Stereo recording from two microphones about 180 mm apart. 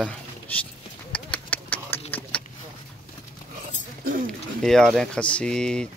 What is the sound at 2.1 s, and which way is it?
Vehicle, 5° left (ahead or behind).